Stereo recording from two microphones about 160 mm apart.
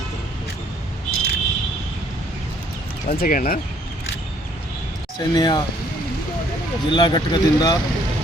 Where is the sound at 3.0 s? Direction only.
60° left (ahead or behind).